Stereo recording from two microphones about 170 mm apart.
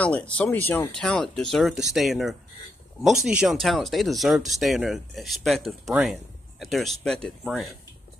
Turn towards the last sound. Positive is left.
turn(degrees=0)  # may be behind; listen again after turning